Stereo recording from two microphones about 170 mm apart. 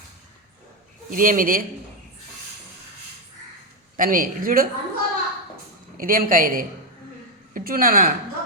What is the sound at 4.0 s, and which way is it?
Speech, 55° right (ahead or behind).